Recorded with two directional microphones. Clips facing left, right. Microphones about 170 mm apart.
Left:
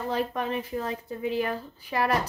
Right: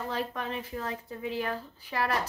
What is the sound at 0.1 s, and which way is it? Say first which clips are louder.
Speech: left 7 dB; 15° left (ahead or behind).